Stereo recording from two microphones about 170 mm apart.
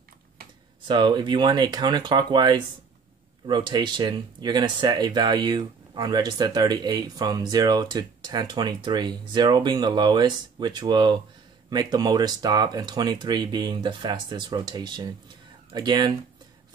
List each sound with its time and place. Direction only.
0.8 s speech: 25° right (ahead or behind)